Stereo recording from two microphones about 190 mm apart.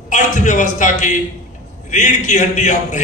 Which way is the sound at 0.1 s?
40° left (ahead or behind).